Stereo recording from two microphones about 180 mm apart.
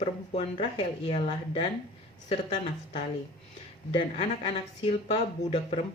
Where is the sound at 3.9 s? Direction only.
35° left (ahead or behind).